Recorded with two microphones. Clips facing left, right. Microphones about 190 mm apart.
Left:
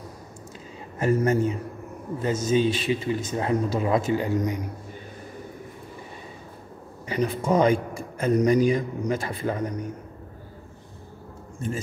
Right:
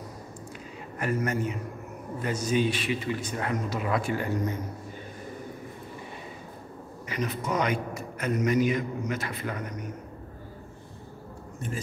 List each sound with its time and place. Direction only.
0.9 s a man's voice: 25° left (ahead or behind)
7.1 s a man's voice: 30° left (ahead or behind)